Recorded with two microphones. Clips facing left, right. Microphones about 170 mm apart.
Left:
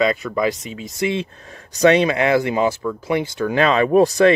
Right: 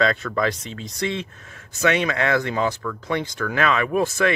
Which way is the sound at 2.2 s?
20° left (ahead or behind).